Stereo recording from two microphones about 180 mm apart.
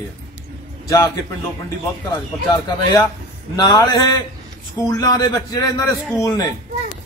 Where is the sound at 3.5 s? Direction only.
25° left (ahead or behind).